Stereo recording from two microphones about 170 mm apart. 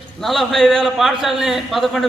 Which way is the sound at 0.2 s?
Centre (ahead or behind).